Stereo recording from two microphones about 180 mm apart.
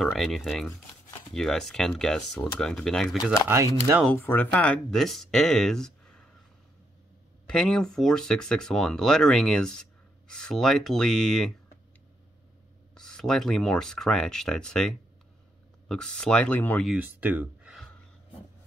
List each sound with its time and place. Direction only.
0.0 s speech: centre (ahead or behind)
3.4 s speech: 15° right (ahead or behind)
4.0 s speech: 10° left (ahead or behind)
7.4 s speech: 5° left (ahead or behind)
12.9 s speech: 5° left (ahead or behind)
16.9 s speech: 10° right (ahead or behind)